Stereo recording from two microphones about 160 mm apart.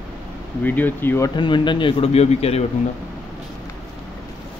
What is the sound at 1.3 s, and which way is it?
A man's voice, 30° left (ahead or behind).